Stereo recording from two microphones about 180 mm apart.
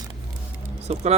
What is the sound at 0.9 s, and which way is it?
Speech, 35° right (ahead or behind).